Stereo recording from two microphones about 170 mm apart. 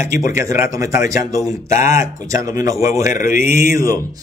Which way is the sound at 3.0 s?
50° left (ahead or behind).